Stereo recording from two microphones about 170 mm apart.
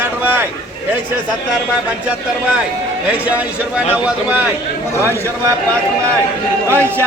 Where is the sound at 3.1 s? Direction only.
10° right (ahead or behind).